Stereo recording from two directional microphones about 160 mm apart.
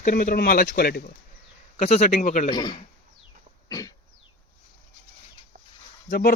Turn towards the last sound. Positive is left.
turn(degrees=65)  # may be behind; listen again after turning